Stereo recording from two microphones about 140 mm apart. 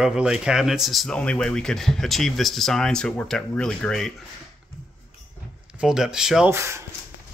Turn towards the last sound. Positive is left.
turn(degrees=-20)  # may be behind; listen again after turning